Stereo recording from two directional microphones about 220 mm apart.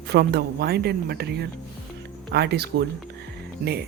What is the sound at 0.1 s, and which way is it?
Speech, 45° right (ahead or behind).